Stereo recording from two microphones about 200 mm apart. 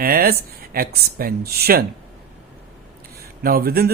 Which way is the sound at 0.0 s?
50° right (ahead or behind).